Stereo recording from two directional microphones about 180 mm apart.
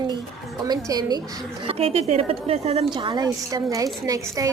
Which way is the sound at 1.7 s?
35° right (ahead or behind).